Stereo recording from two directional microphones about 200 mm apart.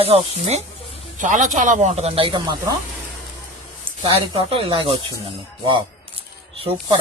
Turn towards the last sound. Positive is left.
turn(degrees=-30)  # may be behind; listen again after turning